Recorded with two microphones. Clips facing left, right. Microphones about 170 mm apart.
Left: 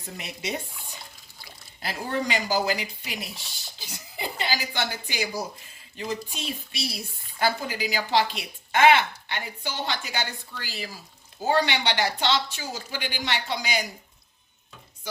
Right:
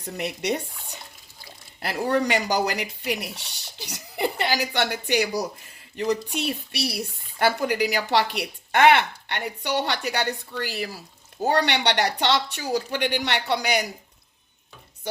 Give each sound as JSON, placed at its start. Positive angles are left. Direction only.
{"t": 0.2, "sound": "a woman's voice", "side_deg": -65}
{"t": 1.8, "sound": "a woman's voice", "side_deg": -65}
{"t": 15.1, "sound": "speech", "side_deg": -60}